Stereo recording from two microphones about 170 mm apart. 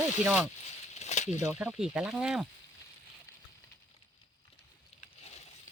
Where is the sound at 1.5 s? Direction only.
5° right (ahead or behind).